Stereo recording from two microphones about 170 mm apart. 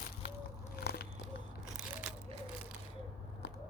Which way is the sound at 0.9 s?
70° left (ahead or behind).